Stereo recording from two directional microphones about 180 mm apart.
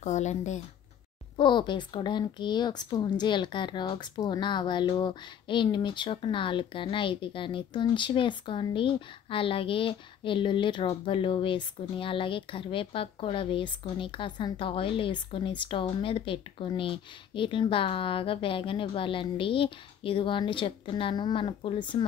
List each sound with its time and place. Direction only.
0.0 s speech: 40° left (ahead or behind)
1.3 s speech: 25° left (ahead or behind)